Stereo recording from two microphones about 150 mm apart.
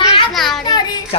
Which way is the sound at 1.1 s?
40° left (ahead or behind).